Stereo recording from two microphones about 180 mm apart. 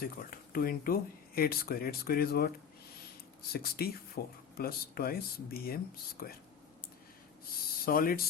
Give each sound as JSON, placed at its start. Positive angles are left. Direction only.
{"t": 0.0, "sound": "speech", "side_deg": 55}
{"t": 3.5, "sound": "speech", "side_deg": 60}
{"t": 7.9, "sound": "speech", "side_deg": 55}